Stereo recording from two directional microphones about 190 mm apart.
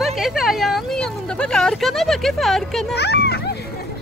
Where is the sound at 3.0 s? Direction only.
60° left (ahead or behind).